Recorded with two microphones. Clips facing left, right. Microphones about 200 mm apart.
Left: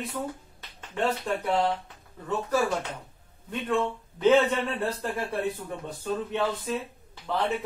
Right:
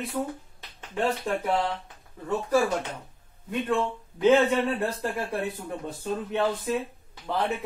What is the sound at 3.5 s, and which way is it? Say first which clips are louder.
Speech: right 1 dB; 10° right (ahead or behind).